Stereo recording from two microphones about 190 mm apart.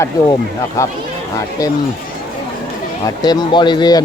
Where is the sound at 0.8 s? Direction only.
15° left (ahead or behind).